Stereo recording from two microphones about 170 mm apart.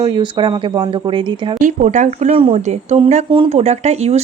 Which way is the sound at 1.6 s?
45° right (ahead or behind).